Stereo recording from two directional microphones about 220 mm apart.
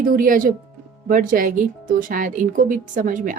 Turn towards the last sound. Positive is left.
turn(degrees=-35)  # may be behind; listen again after turning